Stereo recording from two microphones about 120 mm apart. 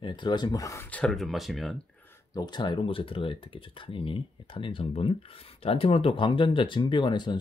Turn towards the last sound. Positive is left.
turn(degrees=40)  # may be behind; listen again after turning